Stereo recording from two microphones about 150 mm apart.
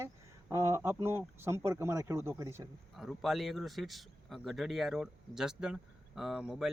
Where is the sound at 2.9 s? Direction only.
Centre (ahead or behind).